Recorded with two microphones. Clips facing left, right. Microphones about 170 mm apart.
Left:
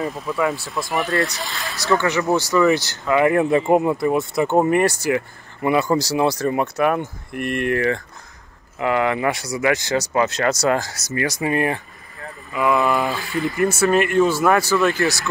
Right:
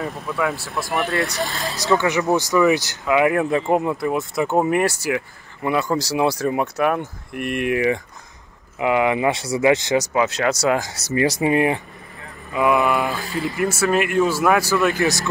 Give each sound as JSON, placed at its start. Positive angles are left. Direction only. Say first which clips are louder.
{"t": 0.0, "sound": "speech", "louder": "left 2 dB", "side_deg": 0}
{"t": 1.4, "sound": "speech", "louder": "right 5 dB", "side_deg": -40}
{"t": 1.8, "sound": "speech", "louder": "even", "side_deg": -15}
{"t": 10.1, "sound": "speech", "louder": "even", "side_deg": -5}
{"t": 10.9, "sound": "speech", "louder": "right 4 dB", "side_deg": -25}
{"t": 12.8, "sound": "speech", "louder": "even", "side_deg": 0}